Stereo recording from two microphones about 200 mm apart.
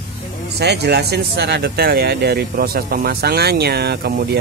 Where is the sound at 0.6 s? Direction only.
55° right (ahead or behind).